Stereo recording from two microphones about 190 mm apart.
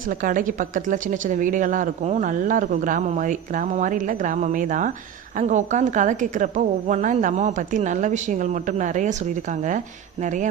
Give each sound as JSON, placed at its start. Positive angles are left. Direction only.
{"t": 0.3, "sound": "a woman's voice", "side_deg": -45}